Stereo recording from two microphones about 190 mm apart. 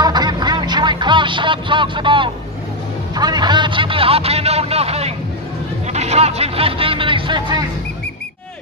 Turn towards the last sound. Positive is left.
turn(degrees=-25)  # may be behind; listen again after turning